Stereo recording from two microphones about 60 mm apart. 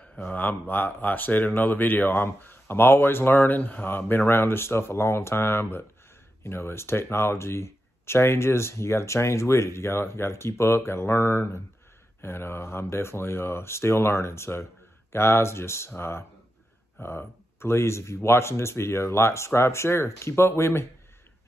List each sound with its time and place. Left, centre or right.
0.3 s speech: left